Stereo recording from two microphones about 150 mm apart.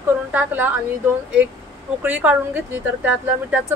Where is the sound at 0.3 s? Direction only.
10° right (ahead or behind).